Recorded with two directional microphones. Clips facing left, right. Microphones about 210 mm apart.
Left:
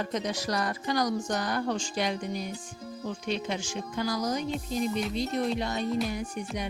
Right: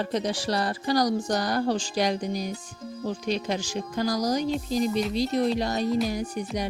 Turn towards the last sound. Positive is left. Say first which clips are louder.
# right 4 dB
turn(degrees=-35)  # may be behind; listen again after turning